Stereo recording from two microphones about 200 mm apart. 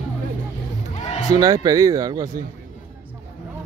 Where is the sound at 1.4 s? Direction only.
20° right (ahead or behind).